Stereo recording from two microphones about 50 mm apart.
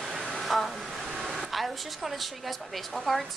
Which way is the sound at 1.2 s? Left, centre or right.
Centre.